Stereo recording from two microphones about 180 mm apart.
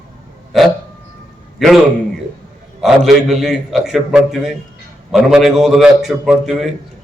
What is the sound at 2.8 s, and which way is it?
A man's voice, centre (ahead or behind).